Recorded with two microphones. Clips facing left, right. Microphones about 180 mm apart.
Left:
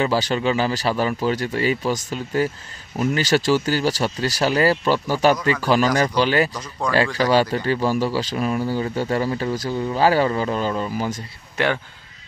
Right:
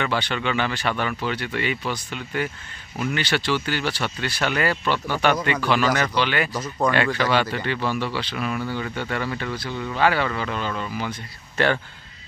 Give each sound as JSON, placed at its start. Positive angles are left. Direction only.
{"t": 0.0, "sound": "speech", "side_deg": 35}
{"t": 6.5, "sound": "speech", "side_deg": -5}
{"t": 6.9, "sound": "speech", "side_deg": 35}
{"t": 11.5, "sound": "speech", "side_deg": 10}